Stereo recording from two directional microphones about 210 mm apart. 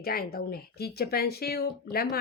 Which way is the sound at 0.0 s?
45° left (ahead or behind).